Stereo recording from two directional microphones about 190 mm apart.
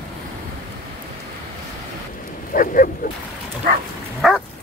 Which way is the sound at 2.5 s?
50° left (ahead or behind).